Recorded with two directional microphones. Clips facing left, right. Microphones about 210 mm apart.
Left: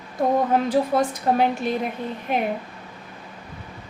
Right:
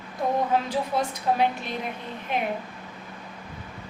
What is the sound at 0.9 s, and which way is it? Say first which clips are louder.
Speech: left 3 dB; 55° left (ahead or behind).